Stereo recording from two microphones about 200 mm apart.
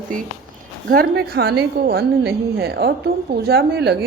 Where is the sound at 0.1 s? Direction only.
40° right (ahead or behind).